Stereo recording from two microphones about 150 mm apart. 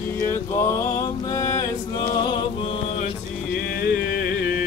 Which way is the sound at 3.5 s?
80° left.